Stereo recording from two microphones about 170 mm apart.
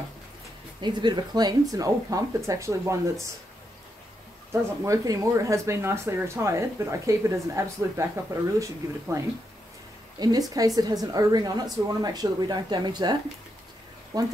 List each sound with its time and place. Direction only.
0.7 s speech: 25° right (ahead or behind)
4.5 s speech: 20° right (ahead or behind)